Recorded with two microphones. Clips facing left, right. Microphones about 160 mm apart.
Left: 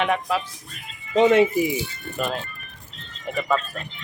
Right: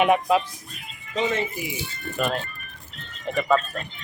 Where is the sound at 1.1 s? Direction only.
60° left (ahead or behind).